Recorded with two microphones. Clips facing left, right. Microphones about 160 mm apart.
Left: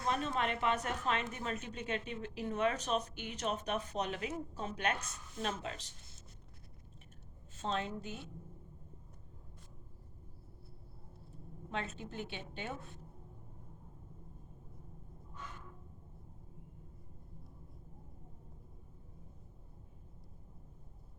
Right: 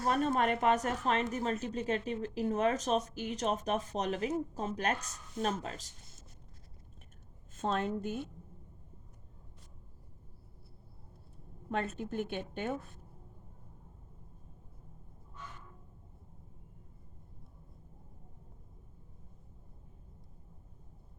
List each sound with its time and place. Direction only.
0.0 s speech: 45° right (ahead or behind)
7.5 s a woman's voice: 50° right (ahead or behind)
11.7 s a woman's voice: 50° right (ahead or behind)